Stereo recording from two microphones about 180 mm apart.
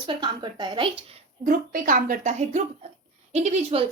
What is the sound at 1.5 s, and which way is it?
A woman's voice, 50° right (ahead or behind).